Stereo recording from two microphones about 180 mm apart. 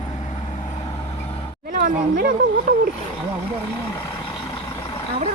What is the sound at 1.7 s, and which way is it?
Speech, 50° right (ahead or behind).